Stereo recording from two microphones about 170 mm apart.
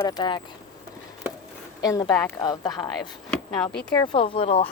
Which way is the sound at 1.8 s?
20° left (ahead or behind).